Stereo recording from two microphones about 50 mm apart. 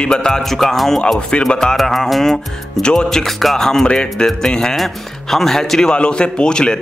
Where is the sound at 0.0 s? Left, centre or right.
Centre.